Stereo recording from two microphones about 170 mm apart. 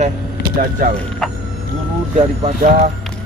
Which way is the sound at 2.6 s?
60° right (ahead or behind).